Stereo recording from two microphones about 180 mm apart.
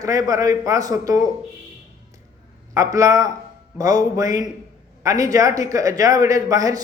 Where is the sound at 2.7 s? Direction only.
20° right (ahead or behind).